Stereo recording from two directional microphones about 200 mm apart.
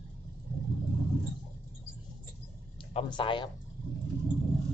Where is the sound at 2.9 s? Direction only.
25° left (ahead or behind).